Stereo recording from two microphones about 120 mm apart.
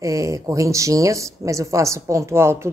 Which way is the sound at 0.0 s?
25° right (ahead or behind).